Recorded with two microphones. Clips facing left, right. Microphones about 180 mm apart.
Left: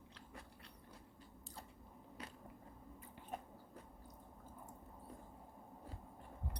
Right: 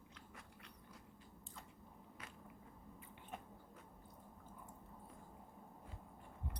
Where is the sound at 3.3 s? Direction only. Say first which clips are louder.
Left 4 dB; 35° left (ahead or behind).